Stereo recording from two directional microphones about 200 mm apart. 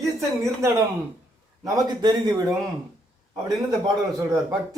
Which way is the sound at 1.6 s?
20° right (ahead or behind).